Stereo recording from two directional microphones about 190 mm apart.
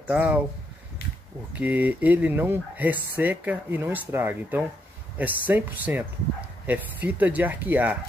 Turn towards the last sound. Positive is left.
turn(degrees=-10)  # may be behind; listen again after turning